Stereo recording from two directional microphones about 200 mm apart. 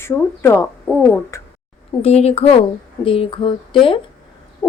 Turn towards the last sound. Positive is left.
turn(degrees=10)  # may be behind; listen again after turning